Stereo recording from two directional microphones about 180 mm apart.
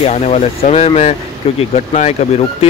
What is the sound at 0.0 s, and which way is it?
Speech, 35° left (ahead or behind).